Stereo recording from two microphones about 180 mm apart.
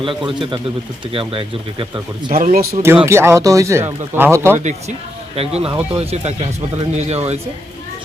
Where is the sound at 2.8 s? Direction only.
15° right (ahead or behind).